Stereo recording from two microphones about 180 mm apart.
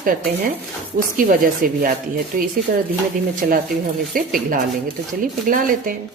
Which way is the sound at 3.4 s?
50° right (ahead or behind).